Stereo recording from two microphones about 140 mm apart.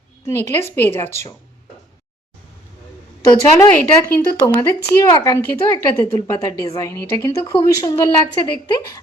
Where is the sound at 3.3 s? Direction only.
25° left (ahead or behind).